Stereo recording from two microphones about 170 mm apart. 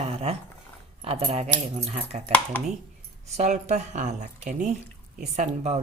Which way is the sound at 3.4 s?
45° right (ahead or behind).